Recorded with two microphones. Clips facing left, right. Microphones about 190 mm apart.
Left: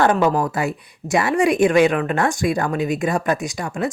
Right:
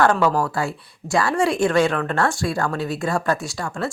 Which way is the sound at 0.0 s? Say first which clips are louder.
Left 1 dB; 20° left (ahead or behind).